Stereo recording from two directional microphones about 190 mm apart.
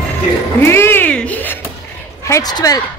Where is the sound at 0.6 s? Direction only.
15° left (ahead or behind).